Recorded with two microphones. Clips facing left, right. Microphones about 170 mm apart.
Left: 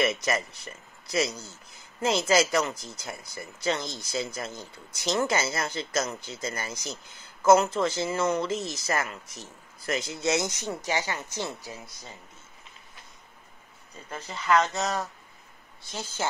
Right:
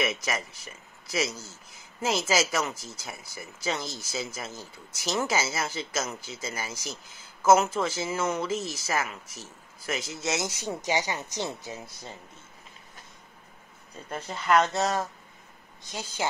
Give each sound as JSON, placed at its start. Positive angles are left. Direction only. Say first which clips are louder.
{"t": 0.0, "sound": "speech", "louder": "left 3 dB", "side_deg": 0}
{"t": 10.6, "sound": "speech", "louder": "right 1 dB", "side_deg": -15}
{"t": 14.6, "sound": "speech", "louder": "right 2 dB", "side_deg": -25}
{"t": 15.8, "sound": "speech", "louder": "even", "side_deg": -15}